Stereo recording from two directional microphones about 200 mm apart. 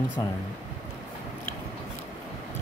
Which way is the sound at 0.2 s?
15° left (ahead or behind).